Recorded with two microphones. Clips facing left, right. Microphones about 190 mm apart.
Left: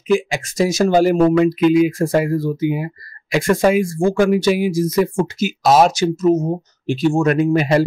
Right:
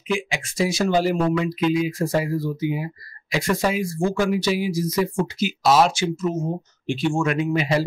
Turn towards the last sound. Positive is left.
turn(degrees=50)  # may be behind; listen again after turning